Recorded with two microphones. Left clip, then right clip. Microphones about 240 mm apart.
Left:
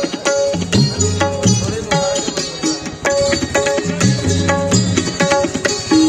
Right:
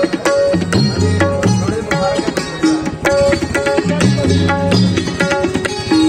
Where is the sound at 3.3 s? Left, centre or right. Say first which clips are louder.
Right 1 dB; left.